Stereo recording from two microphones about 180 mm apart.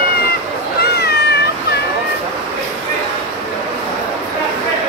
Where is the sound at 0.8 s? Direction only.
65° left (ahead or behind).